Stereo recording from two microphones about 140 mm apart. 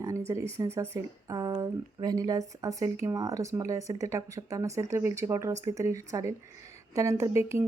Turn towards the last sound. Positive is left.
turn(degrees=-20)  # may be behind; listen again after turning